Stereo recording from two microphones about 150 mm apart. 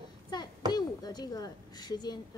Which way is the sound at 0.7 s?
25° left (ahead or behind).